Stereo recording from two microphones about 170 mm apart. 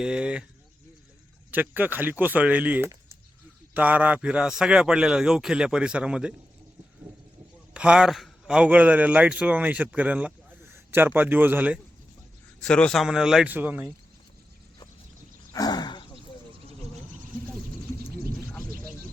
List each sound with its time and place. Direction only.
0.0 s speech: 5° right (ahead or behind)
1.5 s speech: 10° right (ahead or behind)
7.7 s a man's voice: 5° right (ahead or behind)
12.6 s speech: 5° left (ahead or behind); by 13.8 s 10° right (ahead or behind)
15.5 s sigh: 25° left (ahead or behind)